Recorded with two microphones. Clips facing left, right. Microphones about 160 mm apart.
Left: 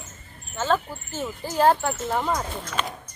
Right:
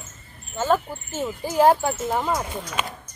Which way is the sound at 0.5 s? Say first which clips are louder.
Right 2 dB; 15° right (ahead or behind).